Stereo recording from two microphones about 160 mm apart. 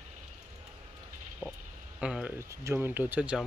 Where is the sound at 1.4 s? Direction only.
Centre (ahead or behind).